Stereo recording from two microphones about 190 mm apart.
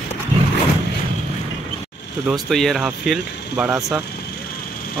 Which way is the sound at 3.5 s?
15° right (ahead or behind).